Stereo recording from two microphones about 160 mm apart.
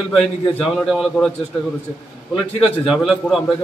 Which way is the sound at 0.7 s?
Centre (ahead or behind).